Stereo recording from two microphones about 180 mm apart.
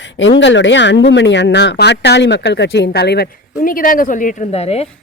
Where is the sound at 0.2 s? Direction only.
90° left; by 3.2 s 65° left (ahead or behind).